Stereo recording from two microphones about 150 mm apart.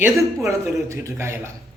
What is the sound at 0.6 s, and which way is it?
Speech, 15° right (ahead or behind).